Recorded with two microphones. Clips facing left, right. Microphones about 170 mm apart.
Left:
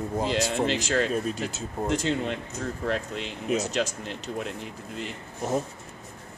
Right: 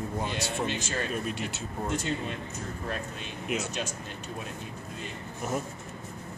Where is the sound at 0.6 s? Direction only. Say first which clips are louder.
Left 7 dB; 90° left.